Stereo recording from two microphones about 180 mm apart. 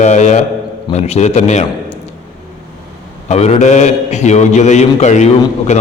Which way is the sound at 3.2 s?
35° left (ahead or behind).